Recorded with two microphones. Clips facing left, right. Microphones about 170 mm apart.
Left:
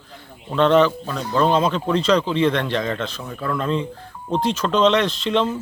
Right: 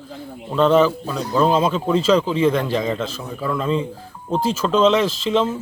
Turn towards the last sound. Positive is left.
turn(degrees=-5)  # may be behind; listen again after turning